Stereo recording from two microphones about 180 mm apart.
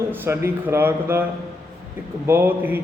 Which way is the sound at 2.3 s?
10° right (ahead or behind).